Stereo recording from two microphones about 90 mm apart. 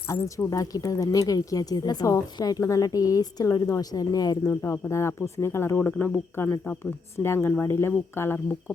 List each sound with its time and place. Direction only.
0.1 s speech: 40° left (ahead or behind)
2.0 s a woman's voice: 40° left (ahead or behind)
4.6 s speech: 30° left (ahead or behind)